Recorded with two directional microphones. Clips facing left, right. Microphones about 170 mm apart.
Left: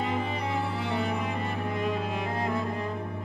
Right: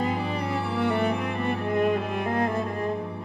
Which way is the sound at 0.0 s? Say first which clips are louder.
Right 3 dB; 50° right (ahead or behind).